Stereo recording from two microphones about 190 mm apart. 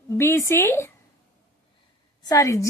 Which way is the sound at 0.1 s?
15° left (ahead or behind).